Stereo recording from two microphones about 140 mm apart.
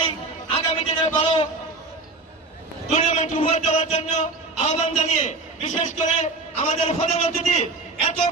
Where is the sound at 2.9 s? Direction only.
55° left (ahead or behind).